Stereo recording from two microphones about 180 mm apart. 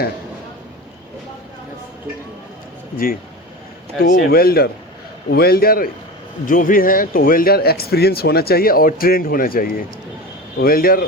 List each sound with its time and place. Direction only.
4.2 s speech: 55° left (ahead or behind)